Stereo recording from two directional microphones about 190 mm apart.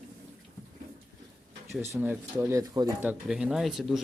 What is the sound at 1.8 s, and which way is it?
Speech, 10° right (ahead or behind).